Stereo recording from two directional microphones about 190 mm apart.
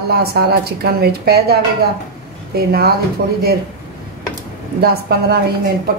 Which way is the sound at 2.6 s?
55° right (ahead or behind).